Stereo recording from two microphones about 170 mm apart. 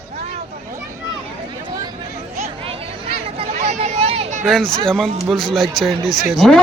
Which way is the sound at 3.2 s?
35° right (ahead or behind).